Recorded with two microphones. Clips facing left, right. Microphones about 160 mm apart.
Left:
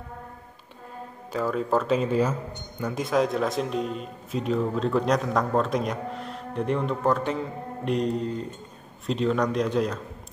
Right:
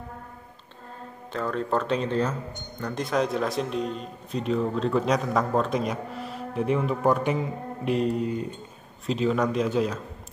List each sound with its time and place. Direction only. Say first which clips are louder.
1.3 s a man's voice: left 2 dB; 5° left (ahead or behind)